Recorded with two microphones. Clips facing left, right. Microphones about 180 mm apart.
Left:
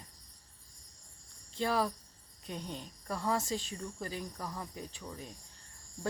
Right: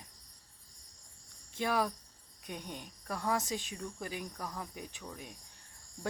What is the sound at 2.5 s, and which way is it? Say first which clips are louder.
Speech: left 2 dB; 15° right (ahead or behind).